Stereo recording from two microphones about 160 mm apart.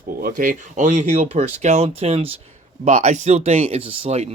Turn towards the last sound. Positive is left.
turn(degrees=-40)  # may be behind; listen again after turning